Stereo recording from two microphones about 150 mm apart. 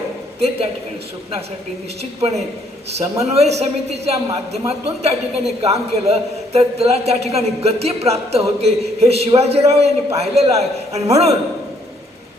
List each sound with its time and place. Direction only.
0.3 s a man's voice: 40° right (ahead or behind)
3.2 s a man's voice: 45° right (ahead or behind)